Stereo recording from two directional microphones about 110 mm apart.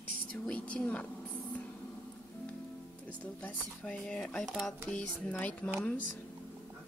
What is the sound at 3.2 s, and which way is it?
Speech, 15° left (ahead or behind).